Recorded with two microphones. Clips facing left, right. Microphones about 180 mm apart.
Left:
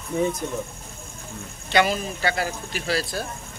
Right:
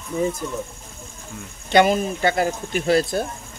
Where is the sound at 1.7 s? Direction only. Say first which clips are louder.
Right 5 dB; 50° right (ahead or behind).